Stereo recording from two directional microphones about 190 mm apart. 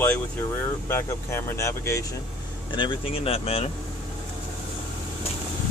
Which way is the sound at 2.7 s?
25° left (ahead or behind).